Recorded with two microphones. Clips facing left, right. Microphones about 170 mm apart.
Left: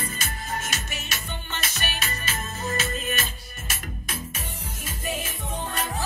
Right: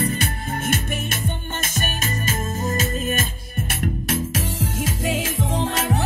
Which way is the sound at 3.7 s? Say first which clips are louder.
Right 11 dB; 80° right.